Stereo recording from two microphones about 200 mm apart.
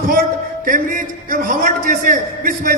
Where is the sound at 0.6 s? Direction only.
40° right (ahead or behind).